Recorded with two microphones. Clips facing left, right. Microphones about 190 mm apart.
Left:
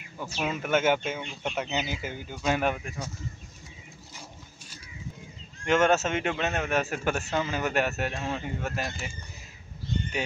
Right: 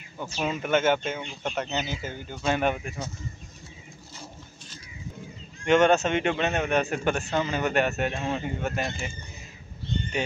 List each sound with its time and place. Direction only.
0.2 s a man's voice: 5° left (ahead or behind)
5.7 s a man's voice: 5° left (ahead or behind)